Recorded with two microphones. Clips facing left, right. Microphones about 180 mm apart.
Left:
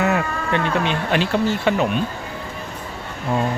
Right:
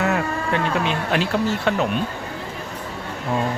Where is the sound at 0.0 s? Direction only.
Centre (ahead or behind).